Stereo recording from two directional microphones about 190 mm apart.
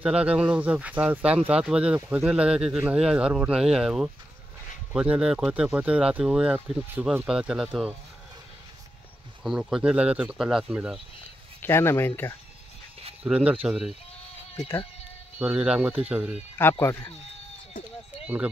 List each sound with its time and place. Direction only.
0.0 s speech: 5° right (ahead or behind)
9.4 s speech: centre (ahead or behind)
11.6 s speech: 10° left (ahead or behind)
13.2 s speech: 5° right (ahead or behind)
15.3 s speech: 5° right (ahead or behind)
16.8 s speech: 15° left (ahead or behind)
18.2 s speech: 5° right (ahead or behind)